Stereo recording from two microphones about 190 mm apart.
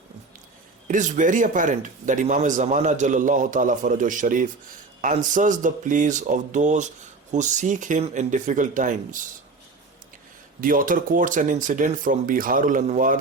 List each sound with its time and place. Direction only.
0.9 s a man's voice: 40° right (ahead or behind)
10.6 s a man's voice: 45° right (ahead or behind)